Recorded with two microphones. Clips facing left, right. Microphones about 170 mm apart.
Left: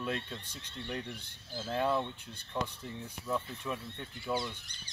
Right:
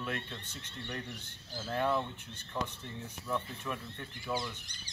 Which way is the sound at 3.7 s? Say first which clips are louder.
Left 1 dB; 10° left (ahead or behind).